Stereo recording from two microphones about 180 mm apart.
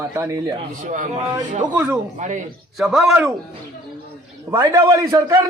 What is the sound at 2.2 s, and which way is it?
Speech, 45° right (ahead or behind).